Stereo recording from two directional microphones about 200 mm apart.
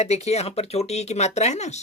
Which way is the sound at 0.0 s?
35° left (ahead or behind).